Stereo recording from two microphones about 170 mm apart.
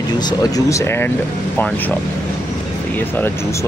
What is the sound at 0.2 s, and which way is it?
Speech, 25° left (ahead or behind).